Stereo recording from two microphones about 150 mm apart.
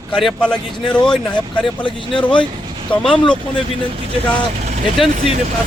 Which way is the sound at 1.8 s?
35° left (ahead or behind).